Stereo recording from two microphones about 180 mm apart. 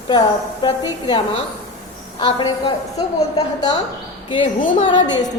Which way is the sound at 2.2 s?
25° left (ahead or behind).